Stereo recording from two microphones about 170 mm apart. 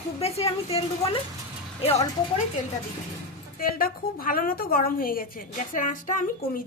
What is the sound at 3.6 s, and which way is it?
A woman's voice, 60° left (ahead or behind).